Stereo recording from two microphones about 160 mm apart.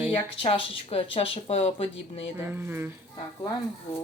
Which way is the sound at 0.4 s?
35° left (ahead or behind).